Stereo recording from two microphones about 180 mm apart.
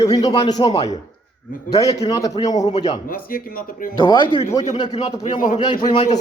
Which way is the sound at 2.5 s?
40° left (ahead or behind).